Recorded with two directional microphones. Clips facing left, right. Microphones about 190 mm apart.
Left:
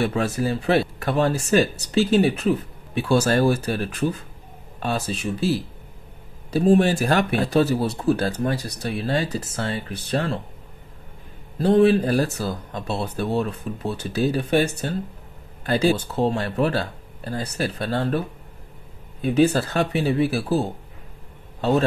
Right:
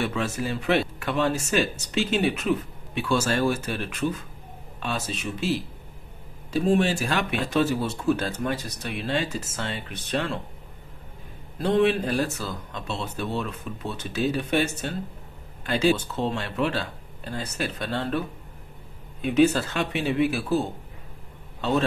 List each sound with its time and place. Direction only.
0.0 s speech: 35° left (ahead or behind)
11.5 s speech: 35° left (ahead or behind)
19.2 s a man's voice: 35° left (ahead or behind)